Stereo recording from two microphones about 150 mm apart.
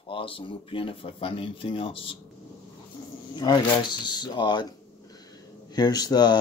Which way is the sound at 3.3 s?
30° left (ahead or behind).